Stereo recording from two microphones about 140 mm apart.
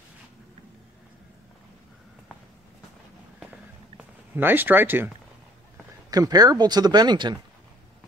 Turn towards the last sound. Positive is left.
turn(degrees=-30)  # may be behind; listen again after turning